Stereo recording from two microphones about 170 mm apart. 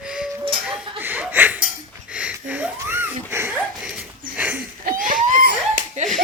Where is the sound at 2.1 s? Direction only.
10° right (ahead or behind).